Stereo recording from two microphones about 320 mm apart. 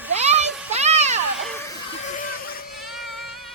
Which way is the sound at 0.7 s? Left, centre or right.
Right.